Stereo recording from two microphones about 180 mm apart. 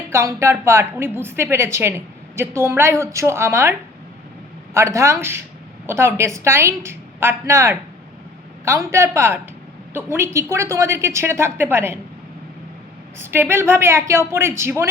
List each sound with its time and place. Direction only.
0.1 s a woman's voice: 15° right (ahead or behind)
13.1 s a woman's voice: 15° right (ahead or behind)